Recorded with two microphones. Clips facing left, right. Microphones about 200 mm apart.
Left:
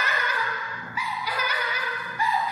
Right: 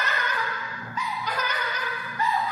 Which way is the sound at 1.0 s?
10° left (ahead or behind).